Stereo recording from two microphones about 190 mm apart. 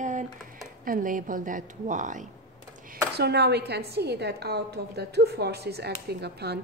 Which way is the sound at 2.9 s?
60° right (ahead or behind).